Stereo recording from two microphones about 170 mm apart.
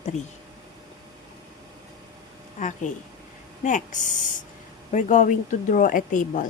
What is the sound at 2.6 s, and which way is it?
Speech, 50° left (ahead or behind).